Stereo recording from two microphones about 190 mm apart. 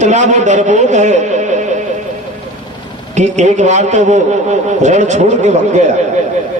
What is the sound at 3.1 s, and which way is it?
A man's voice, 40° right (ahead or behind).